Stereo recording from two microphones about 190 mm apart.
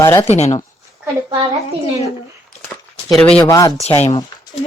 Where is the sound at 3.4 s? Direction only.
15° left (ahead or behind).